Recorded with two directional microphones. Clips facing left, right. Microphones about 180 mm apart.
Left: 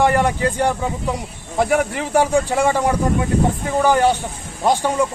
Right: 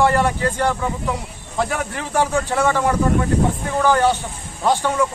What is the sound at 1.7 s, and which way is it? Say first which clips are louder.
Speech: left 5 dB; 15° left (ahead or behind).